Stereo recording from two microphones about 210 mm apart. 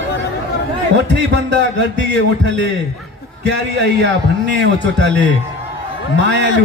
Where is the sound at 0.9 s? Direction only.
55° right (ahead or behind).